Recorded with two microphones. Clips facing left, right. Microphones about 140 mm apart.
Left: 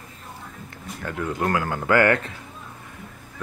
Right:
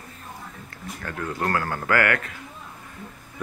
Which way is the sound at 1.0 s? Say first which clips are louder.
Left 3 dB; 15° left (ahead or behind).